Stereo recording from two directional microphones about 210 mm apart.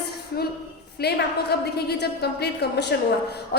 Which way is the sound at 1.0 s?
50° left (ahead or behind).